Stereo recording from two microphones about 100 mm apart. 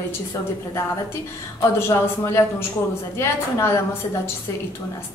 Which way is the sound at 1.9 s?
30° left (ahead or behind).